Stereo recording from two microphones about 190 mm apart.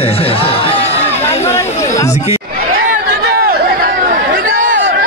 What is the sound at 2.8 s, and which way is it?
Chatter, 45° right (ahead or behind).